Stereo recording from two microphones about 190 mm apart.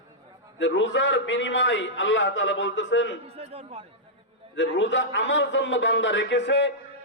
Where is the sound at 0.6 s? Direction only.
75° left (ahead or behind).